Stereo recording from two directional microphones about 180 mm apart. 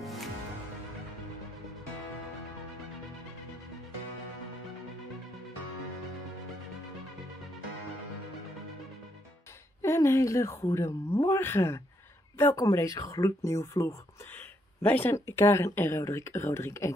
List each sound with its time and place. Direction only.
0.0 s music: centre (ahead or behind)
9.8 s a woman's voice: 15° left (ahead or behind)